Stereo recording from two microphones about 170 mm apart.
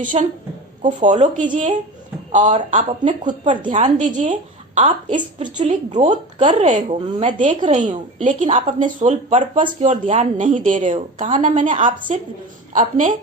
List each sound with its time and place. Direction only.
0.0 s a woman's voice: 50° right (ahead or behind)